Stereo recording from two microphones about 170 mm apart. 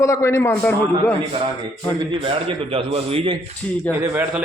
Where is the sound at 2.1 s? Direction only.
35° right (ahead or behind).